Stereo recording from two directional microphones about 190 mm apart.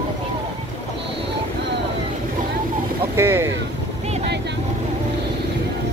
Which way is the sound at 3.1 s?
15° right (ahead or behind).